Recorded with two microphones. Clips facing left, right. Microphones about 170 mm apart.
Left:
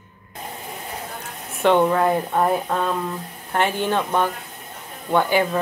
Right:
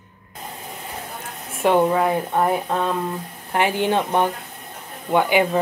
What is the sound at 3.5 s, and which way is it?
Speech, 15° right (ahead or behind).